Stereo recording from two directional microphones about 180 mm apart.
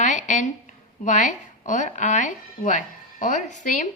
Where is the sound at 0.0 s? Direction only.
40° left (ahead or behind).